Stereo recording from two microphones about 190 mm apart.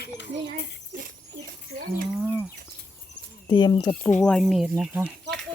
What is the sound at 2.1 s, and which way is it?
Speech, centre (ahead or behind).